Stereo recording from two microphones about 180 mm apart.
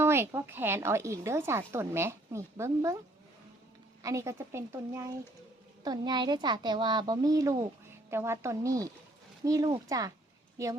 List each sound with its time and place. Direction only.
0.0 s a woman's voice: 15° right (ahead or behind)
4.0 s a woman's voice: 15° right (ahead or behind)